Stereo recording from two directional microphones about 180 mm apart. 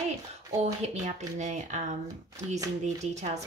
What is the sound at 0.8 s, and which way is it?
Speech, 40° right (ahead or behind).